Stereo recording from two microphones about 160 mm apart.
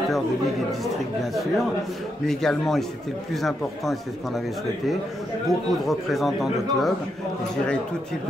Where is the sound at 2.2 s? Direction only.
5° left (ahead or behind).